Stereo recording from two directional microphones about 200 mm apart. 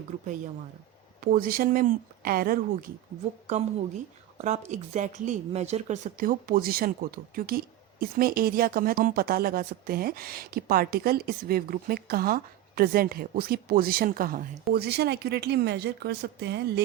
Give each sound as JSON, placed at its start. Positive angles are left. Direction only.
{"t": 1.2, "sound": "speech", "side_deg": -45}
{"t": 4.4, "sound": "speech", "side_deg": -35}